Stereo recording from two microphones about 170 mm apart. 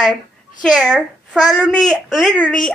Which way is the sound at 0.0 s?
5° left (ahead or behind).